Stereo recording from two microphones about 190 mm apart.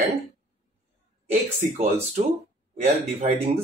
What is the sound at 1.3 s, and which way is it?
Speech, 35° right (ahead or behind).